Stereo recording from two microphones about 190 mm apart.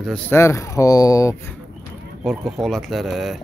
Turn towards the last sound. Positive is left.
turn(degrees=0)  # may be behind; listen again after turning